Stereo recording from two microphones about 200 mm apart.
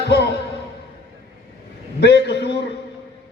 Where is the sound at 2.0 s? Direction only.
60° left (ahead or behind).